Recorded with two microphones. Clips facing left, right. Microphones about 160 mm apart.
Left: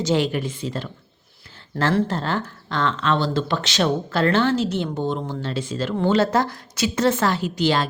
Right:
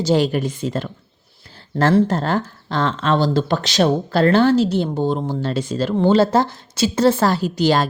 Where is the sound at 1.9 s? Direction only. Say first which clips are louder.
Right 5 dB; 45° right (ahead or behind).